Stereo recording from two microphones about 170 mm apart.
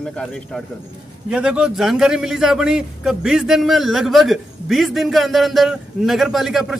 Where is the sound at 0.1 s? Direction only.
5° left (ahead or behind).